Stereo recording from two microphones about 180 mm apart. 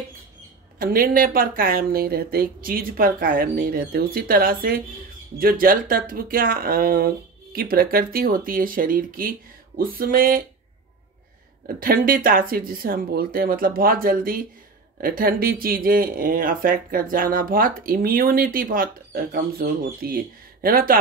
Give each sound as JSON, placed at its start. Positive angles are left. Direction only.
{"t": 0.7, "sound": "speech", "side_deg": -50}
{"t": 11.6, "sound": "speech", "side_deg": -50}